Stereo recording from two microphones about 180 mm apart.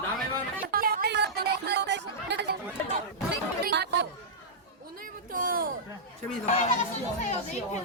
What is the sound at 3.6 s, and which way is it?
Chatter, 70° right (ahead or behind).